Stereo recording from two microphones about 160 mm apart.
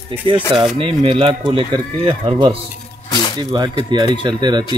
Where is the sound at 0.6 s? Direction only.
35° right (ahead or behind).